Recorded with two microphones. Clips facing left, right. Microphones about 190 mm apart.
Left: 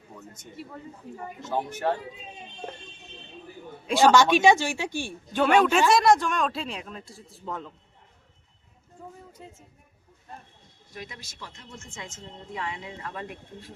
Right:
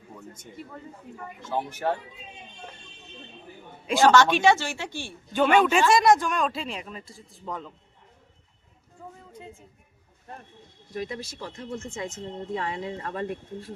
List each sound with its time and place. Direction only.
1.5 s speech: 5° right (ahead or behind)
3.8 s speech: centre (ahead or behind)
4.1 s speech: 10° left (ahead or behind)
5.3 s speech: centre (ahead or behind)
10.9 s speech: 35° right (ahead or behind)